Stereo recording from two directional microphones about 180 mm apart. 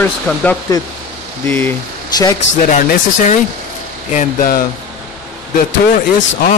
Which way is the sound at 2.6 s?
40° left (ahead or behind).